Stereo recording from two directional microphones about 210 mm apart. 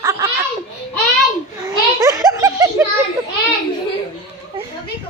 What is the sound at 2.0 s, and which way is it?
Giggle, 15° right (ahead or behind).